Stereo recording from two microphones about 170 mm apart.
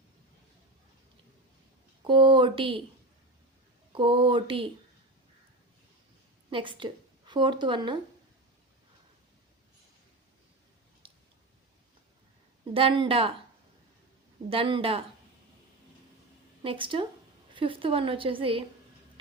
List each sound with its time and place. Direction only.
2.0 s speech: 30° right (ahead or behind)
3.9 s speech: 30° right (ahead or behind)
6.5 s a woman's voice: 30° right (ahead or behind)
11.0 s squish: 30° right (ahead or behind)
12.7 s a woman's voice: 30° right (ahead or behind)
14.5 s a woman's voice: 30° right (ahead or behind)
16.6 s a woman's voice: 30° right (ahead or behind)